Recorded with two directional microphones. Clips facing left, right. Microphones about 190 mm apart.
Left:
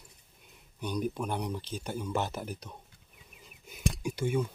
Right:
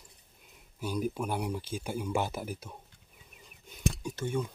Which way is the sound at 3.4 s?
10° left (ahead or behind).